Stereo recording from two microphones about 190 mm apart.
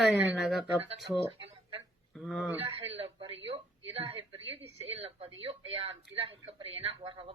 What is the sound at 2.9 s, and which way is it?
Speech, 30° right (ahead or behind).